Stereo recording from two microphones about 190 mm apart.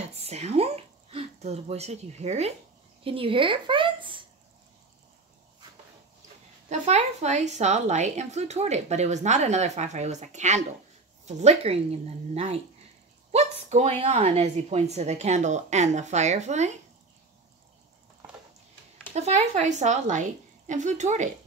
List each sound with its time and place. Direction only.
0.0 s a sound: 35° right (ahead or behind)
3.0 s a woman's voice: 30° right (ahead or behind)
6.7 s a woman's voice: 35° right (ahead or behind)
19.1 s a woman's voice: 35° right (ahead or behind)